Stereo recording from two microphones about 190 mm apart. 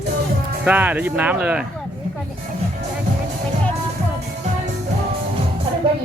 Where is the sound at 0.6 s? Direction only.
10° right (ahead or behind).